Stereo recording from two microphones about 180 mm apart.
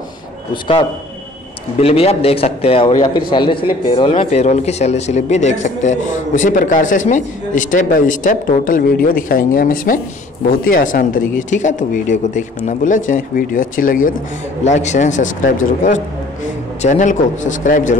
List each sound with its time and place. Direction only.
1.8 s a man's voice: 35° left (ahead or behind)